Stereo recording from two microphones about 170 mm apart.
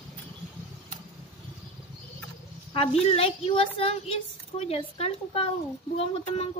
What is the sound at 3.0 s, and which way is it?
Speech, 35° left (ahead or behind).